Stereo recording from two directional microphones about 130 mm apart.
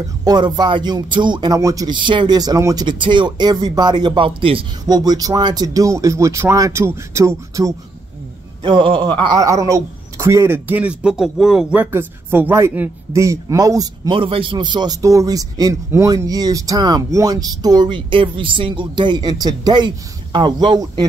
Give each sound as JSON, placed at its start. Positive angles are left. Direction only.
{"t": 0.2, "sound": "speech", "side_deg": -30}
{"t": 4.8, "sound": "speech", "side_deg": -30}
{"t": 8.6, "sound": "speech", "side_deg": -40}
{"t": 9.2, "sound": "speech", "side_deg": -30}
{"t": 14.1, "sound": "speech", "side_deg": -40}